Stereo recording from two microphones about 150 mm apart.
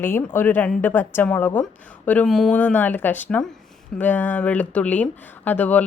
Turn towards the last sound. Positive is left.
turn(degrees=10)  # may be behind; listen again after turning